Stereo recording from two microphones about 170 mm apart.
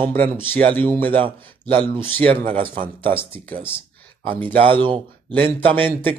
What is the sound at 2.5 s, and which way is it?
Speech, 30° right (ahead or behind).